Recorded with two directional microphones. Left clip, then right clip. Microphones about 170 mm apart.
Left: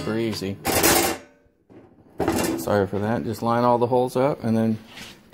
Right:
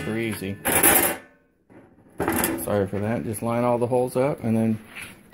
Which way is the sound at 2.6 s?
20° left (ahead or behind).